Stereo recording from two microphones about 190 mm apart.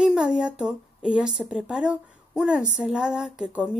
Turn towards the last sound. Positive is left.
turn(degrees=-5)  # may be behind; listen again after turning